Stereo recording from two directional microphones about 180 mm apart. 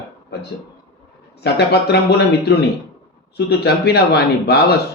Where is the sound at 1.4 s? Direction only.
65° left (ahead or behind).